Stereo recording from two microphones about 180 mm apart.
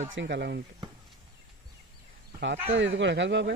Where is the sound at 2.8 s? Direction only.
90° right.